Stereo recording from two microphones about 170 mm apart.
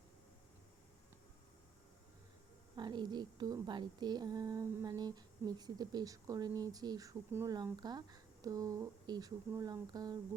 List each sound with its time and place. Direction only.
2.7 s a woman's voice: 25° right (ahead or behind)